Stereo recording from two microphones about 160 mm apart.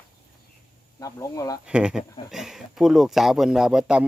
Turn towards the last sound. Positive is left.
turn(degrees=-5)  # may be behind; listen again after turning